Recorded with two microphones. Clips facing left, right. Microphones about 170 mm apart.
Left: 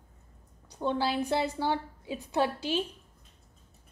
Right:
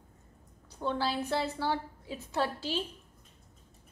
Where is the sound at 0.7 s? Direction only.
15° left (ahead or behind).